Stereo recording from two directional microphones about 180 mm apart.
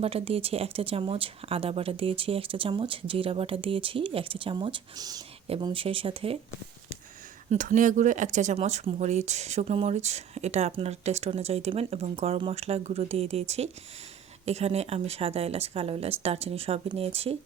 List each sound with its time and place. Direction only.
0.0 s speech: 35° right (ahead or behind)
7.5 s speech: 40° right (ahead or behind)